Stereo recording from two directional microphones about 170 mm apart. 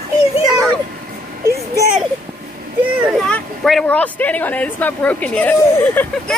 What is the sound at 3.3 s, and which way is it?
Speech, centre (ahead or behind).